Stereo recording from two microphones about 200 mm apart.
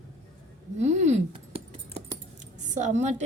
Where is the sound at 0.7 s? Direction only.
35° right (ahead or behind).